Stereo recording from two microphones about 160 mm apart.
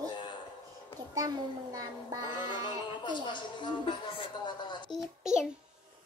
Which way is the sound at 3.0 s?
30° left (ahead or behind).